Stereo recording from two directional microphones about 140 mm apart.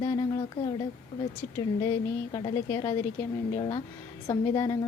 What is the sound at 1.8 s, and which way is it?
A woman's voice, 30° left (ahead or behind).